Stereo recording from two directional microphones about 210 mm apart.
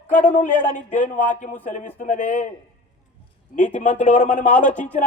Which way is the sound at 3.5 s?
35° left (ahead or behind).